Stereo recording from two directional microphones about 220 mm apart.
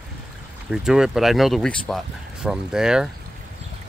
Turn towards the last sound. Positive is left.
turn(degrees=-5)  # may be behind; listen again after turning